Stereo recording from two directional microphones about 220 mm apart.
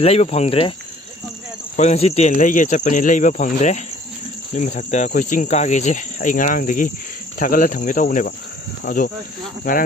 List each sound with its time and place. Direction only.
0.0 s cricket: 30° left (ahead or behind)
1.7 s cricket: 30° left (ahead or behind)